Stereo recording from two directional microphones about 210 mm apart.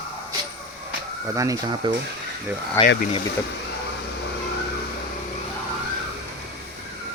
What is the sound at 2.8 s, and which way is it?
Speech, 15° left (ahead or behind).